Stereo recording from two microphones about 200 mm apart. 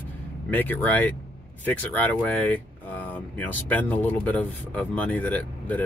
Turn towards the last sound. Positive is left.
turn(degrees=10)  # may be behind; listen again after turning